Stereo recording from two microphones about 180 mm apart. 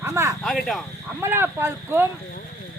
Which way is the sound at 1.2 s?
10° right (ahead or behind).